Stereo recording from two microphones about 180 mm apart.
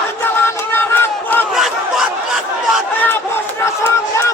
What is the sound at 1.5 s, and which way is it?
Crowd, centre (ahead or behind).